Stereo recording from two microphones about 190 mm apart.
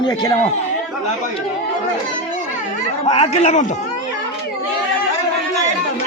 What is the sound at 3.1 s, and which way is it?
Speech, 35° left (ahead or behind).